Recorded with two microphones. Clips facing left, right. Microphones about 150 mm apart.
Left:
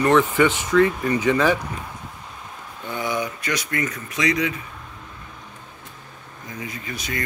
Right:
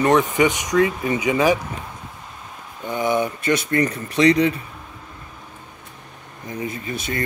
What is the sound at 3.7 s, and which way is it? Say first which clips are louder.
Speech: right 6 dB; 35° right (ahead or behind).